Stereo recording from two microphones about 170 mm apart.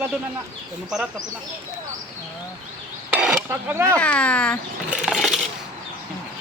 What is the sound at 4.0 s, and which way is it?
Speech, 5° left (ahead or behind).